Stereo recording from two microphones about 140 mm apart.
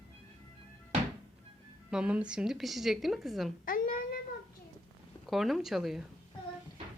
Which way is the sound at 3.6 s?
90° left.